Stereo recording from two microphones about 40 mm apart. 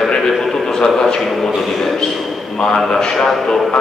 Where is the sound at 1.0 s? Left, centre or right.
Centre.